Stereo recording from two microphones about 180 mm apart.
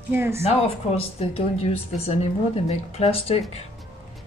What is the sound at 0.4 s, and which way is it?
Speech, 35° left (ahead or behind).